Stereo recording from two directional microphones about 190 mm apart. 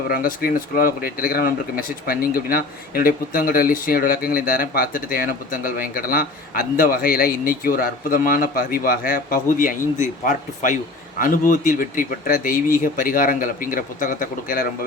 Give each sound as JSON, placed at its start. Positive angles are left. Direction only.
{"t": 0.1, "sound": "speech", "side_deg": 50}